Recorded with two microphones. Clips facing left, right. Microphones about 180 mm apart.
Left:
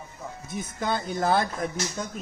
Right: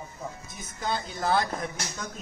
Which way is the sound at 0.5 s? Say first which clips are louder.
Left 4 dB; 55° left (ahead or behind).